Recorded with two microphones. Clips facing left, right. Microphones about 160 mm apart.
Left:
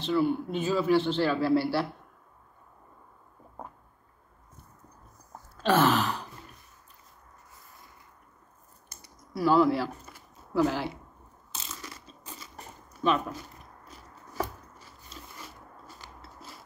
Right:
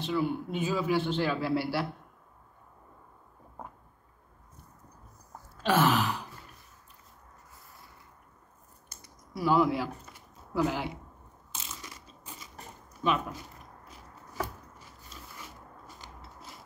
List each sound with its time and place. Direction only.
0.1 s a man's voice: 10° right (ahead or behind)
5.6 s a sound: 10° right (ahead or behind)
9.3 s a sound: 15° right (ahead or behind)
11.5 s crushing: 10° right (ahead or behind)
12.5 s zipper: 5° right (ahead or behind)
15.3 s zipper: 15° right (ahead or behind)